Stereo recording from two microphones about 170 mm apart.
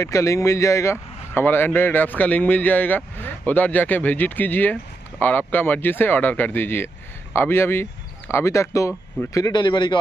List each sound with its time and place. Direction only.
0.0 s speech: 20° left (ahead or behind)